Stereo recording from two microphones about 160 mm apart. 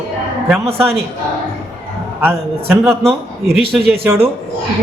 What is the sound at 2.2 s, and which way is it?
Speech, 15° right (ahead or behind).